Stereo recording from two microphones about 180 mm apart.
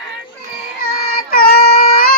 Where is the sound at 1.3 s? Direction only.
55° left (ahead or behind).